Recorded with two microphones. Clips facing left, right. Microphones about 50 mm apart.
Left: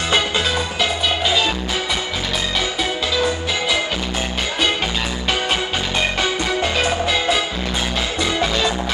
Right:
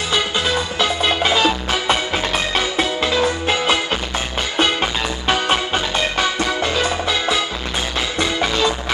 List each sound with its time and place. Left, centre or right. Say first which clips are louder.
1.2 s music: right 3 dB; right
2.5 s music: right 2 dB; right